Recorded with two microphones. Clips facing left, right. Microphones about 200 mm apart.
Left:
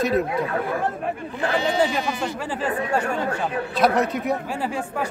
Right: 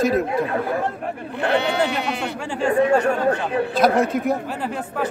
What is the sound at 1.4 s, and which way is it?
Speech, 65° right (ahead or behind).